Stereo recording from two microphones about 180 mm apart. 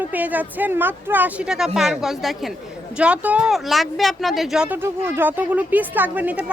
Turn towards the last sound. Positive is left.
turn(degrees=-10)  # may be behind; listen again after turning